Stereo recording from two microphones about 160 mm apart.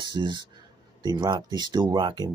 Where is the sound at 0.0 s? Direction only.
25° right (ahead or behind).